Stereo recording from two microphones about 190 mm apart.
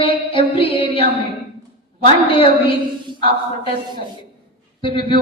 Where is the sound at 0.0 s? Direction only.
25° left (ahead or behind).